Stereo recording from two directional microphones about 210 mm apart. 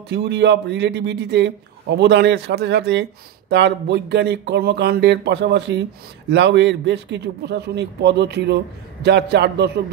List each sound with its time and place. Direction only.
0.1 s a man's voice: 55° right (ahead or behind)